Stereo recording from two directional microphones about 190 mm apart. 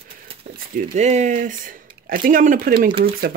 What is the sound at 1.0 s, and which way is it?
Speech, 35° right (ahead or behind).